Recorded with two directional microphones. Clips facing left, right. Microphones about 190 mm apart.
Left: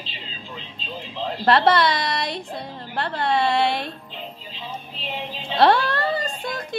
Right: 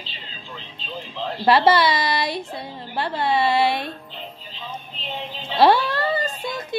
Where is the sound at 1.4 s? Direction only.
5° right (ahead or behind).